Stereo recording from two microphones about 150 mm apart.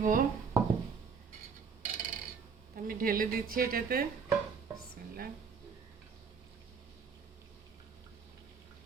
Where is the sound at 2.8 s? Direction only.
70° right (ahead or behind).